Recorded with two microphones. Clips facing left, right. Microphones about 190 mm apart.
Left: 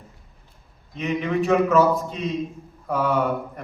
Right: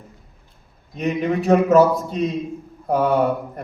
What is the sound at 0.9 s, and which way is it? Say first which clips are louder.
A man's voice: right 2 dB; 40° right (ahead or behind).